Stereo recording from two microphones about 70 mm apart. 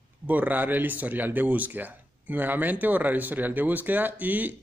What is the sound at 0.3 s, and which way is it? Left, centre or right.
Speech, right.